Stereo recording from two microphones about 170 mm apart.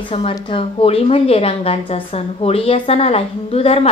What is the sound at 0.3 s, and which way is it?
Speech, 30° left (ahead or behind).